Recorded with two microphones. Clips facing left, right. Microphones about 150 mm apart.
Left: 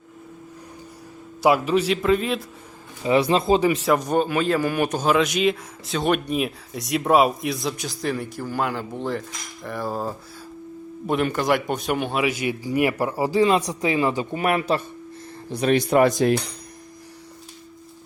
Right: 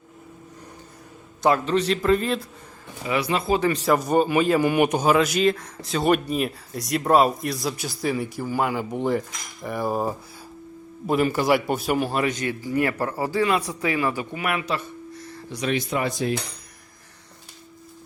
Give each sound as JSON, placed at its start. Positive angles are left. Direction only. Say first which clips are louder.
{"t": 1.4, "sound": "speech", "louder": "left 2 dB", "side_deg": 10}
{"t": 3.0, "sound": "speech", "louder": "left 5 dB", "side_deg": 25}
{"t": 3.6, "sound": "speech", "louder": "left 1 dB", "side_deg": 0}
{"t": 5.1, "sound": "speech", "louder": "even", "side_deg": 0}
{"t": 11.0, "sound": "speech", "louder": "right 1 dB", "side_deg": 0}
{"t": 14.3, "sound": "a sound", "louder": "left 5 dB", "side_deg": 35}
{"t": 15.5, "sound": "speech", "louder": "left 7 dB", "side_deg": 50}